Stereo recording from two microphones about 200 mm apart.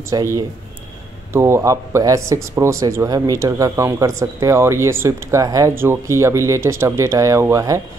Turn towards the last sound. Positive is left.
turn(degrees=-15)  # may be behind; listen again after turning